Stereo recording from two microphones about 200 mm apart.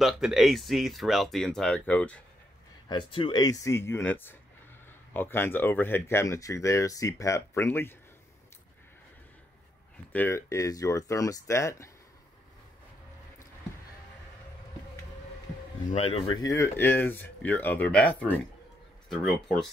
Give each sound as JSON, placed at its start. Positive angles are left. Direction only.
{"t": 0.0, "sound": "speech", "side_deg": 0}
{"t": 2.9, "sound": "speech", "side_deg": 25}
{"t": 10.1, "sound": "speech", "side_deg": 10}
{"t": 15.9, "sound": "speech", "side_deg": 30}
{"t": 16.4, "sound": "speech", "side_deg": 15}